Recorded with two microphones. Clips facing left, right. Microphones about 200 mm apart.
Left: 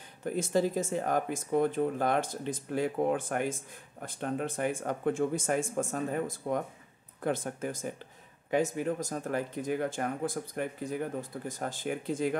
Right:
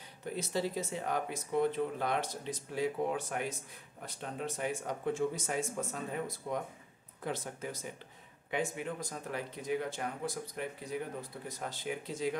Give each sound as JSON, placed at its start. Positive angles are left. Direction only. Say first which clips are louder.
{"t": 0.2, "sound": "speech", "louder": "left 7 dB", "side_deg": 50}